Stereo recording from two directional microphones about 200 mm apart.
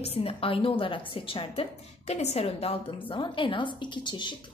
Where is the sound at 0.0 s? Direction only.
30° left (ahead or behind).